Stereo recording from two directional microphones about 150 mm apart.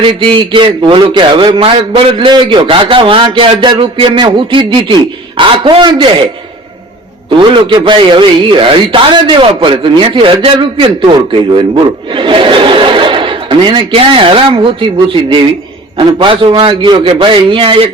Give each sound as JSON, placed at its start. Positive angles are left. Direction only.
{"t": 0.0, "sound": "a man's voice", "side_deg": -35}
{"t": 7.3, "sound": "a man's voice", "side_deg": -35}